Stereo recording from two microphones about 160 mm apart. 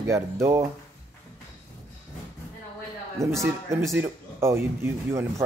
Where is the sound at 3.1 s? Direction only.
20° right (ahead or behind).